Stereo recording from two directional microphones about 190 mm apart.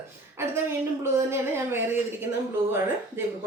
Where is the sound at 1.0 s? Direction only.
15° right (ahead or behind).